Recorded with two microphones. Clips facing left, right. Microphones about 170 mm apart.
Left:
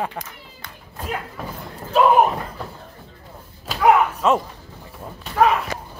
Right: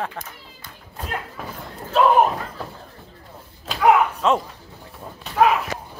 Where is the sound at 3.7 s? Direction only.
5° left (ahead or behind).